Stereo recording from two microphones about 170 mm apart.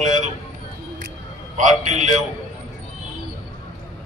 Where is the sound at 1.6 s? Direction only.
45° right (ahead or behind).